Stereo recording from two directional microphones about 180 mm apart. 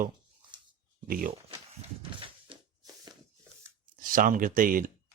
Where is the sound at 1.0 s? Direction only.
50° right (ahead or behind).